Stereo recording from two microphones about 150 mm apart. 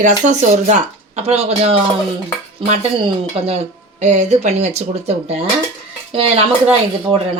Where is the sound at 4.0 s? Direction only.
50° right (ahead or behind).